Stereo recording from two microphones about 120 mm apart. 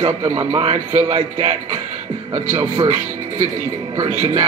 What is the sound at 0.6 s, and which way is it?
Speech, 60° right (ahead or behind).